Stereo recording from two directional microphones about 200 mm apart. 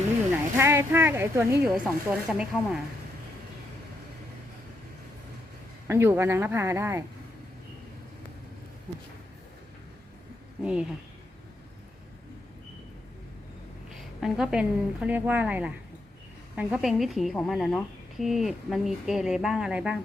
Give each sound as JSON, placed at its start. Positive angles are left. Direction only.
{"t": 0.5, "sound": "speech", "side_deg": -15}
{"t": 5.9, "sound": "speech", "side_deg": -10}
{"t": 10.6, "sound": "a woman's voice", "side_deg": -5}
{"t": 14.2, "sound": "a woman's voice", "side_deg": 0}